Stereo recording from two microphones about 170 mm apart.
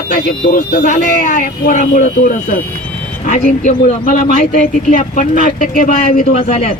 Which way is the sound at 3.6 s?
50° left (ahead or behind).